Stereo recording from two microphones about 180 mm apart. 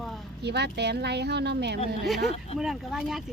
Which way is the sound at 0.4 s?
70° right (ahead or behind).